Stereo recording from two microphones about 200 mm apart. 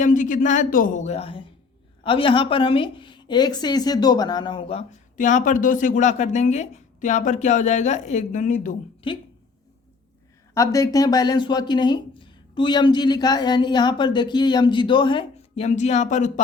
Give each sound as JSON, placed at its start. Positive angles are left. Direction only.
{"t": 0.0, "sound": "a woman's voice", "side_deg": 40}
{"t": 9.0, "sound": "speech", "side_deg": 25}
{"t": 10.5, "sound": "speech", "side_deg": 15}